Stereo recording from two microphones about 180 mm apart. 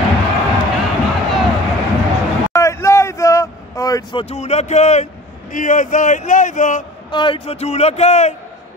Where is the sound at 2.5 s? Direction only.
15° left (ahead or behind); by 5.0 s 40° left (ahead or behind).